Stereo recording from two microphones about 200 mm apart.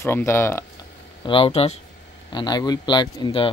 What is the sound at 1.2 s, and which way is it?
Speech, 25° left (ahead or behind).